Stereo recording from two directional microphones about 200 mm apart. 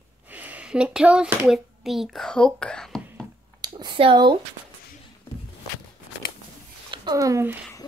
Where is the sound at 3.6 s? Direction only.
25° right (ahead or behind).